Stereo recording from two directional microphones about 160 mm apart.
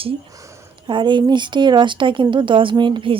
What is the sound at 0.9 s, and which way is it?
Speech, 30° right (ahead or behind).